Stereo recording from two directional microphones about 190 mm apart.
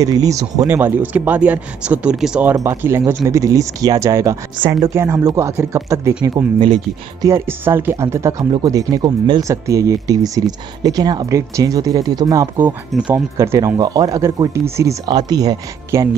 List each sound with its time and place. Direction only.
0.0 s speech: 20° right (ahead or behind)
2.5 s speech: 15° right (ahead or behind)
12.6 s speech: 5° right (ahead or behind)